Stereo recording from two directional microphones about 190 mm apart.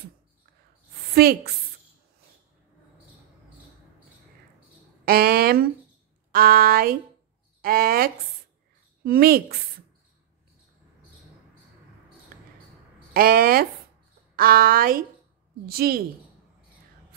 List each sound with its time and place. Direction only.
1.1 s speech: 55° right (ahead or behind)
5.0 s speech: 50° right (ahead or behind)
13.1 s speech: 50° right (ahead or behind)